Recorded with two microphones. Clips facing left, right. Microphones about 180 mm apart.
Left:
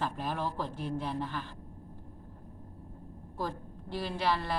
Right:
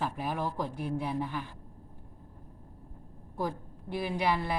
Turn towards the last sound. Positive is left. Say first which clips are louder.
# right 2 dB
turn(degrees=-10)  # may be behind; listen again after turning